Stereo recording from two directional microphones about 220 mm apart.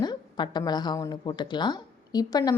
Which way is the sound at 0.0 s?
20° left (ahead or behind).